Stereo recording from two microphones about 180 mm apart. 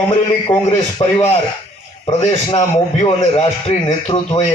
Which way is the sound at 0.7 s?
15° left (ahead or behind).